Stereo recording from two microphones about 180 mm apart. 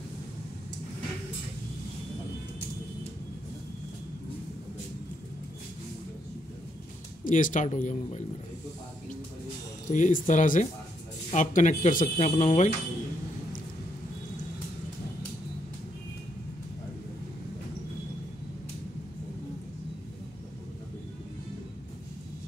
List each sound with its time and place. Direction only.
7.2 s speech: 50° left (ahead or behind)
9.8 s speech: 45° left (ahead or behind)